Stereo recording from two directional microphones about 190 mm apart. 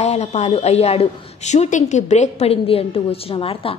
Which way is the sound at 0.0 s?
35° left (ahead or behind).